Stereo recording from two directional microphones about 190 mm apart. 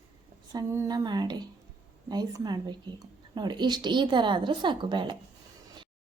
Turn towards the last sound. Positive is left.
turn(degrees=-25)  # may be behind; listen again after turning